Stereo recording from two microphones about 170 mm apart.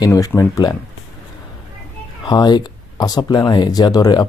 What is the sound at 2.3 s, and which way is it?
Speech, 25° left (ahead or behind).